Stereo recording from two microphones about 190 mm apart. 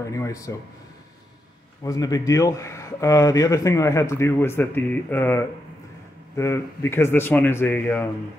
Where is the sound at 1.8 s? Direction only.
20° left (ahead or behind).